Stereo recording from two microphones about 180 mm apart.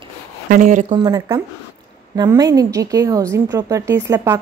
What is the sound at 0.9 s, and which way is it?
A woman's voice, 25° right (ahead or behind).